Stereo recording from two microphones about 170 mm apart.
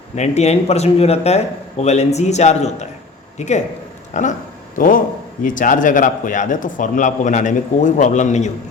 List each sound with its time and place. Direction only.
0.2 s a man's voice: 40° left (ahead or behind)